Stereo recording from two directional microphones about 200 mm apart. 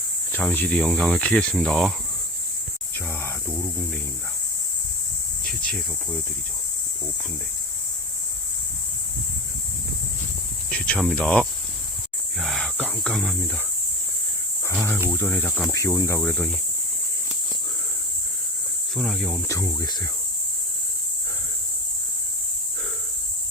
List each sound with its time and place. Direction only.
0.3 s speech: 10° left (ahead or behind)
3.1 s a sound: 10° left (ahead or behind)
10.7 s speech: 5° left (ahead or behind)
12.4 s cricket: centre (ahead or behind)
14.7 s cricket: 10° left (ahead or behind)
15.1 s speech: 10° left (ahead or behind)
15.7 s speech: 15° left (ahead or behind)
18.9 s speech: centre (ahead or behind)
19.5 s speech: 15° left (ahead or behind)